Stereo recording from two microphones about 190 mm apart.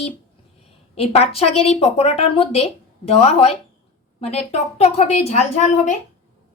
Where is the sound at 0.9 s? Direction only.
30° left (ahead or behind).